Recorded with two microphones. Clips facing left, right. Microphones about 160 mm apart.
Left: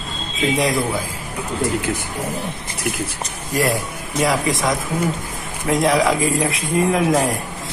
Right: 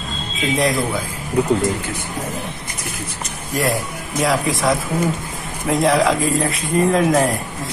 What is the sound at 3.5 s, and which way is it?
Speech, centre (ahead or behind).